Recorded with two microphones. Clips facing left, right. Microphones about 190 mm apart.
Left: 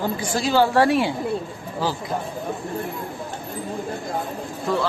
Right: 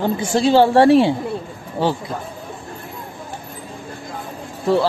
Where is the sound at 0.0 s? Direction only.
25° right (ahead or behind).